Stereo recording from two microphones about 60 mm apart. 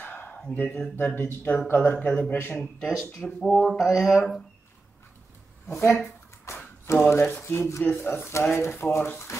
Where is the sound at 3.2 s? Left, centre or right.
Centre.